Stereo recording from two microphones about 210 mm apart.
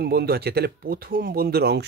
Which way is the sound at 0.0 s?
50° right (ahead or behind).